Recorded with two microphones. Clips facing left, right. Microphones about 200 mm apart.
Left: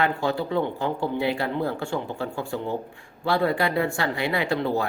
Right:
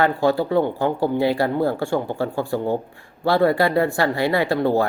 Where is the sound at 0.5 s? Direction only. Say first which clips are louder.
Right 6 dB; 50° right (ahead or behind).